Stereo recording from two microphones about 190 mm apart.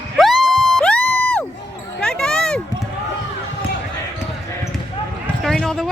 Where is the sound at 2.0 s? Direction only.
5° left (ahead or behind).